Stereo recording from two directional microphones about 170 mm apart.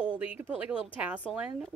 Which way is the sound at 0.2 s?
10° right (ahead or behind).